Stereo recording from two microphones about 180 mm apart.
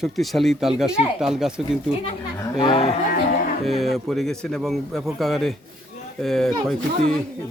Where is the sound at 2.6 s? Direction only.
25° left (ahead or behind).